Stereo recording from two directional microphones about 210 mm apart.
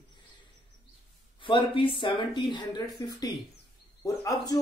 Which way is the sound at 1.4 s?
25° left (ahead or behind).